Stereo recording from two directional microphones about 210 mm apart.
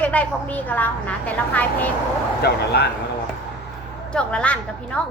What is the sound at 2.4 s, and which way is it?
Speech, 50° left (ahead or behind).